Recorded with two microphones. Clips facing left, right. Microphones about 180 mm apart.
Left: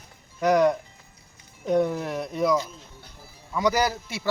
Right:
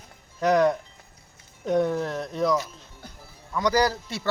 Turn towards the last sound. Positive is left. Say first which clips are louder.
# right 1 dB
turn(degrees=5)  # may be behind; listen again after turning